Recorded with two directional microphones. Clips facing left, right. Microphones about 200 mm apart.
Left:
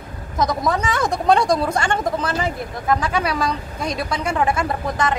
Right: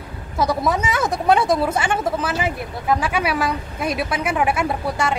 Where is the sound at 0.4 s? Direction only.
10° right (ahead or behind).